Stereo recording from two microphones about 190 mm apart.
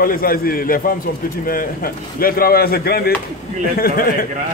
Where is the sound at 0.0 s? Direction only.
50° left (ahead or behind).